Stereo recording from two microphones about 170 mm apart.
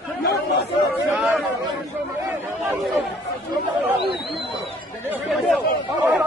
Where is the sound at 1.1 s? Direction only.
Centre (ahead or behind).